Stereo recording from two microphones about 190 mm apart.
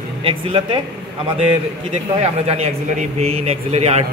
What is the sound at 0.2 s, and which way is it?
Speech, 30° right (ahead or behind).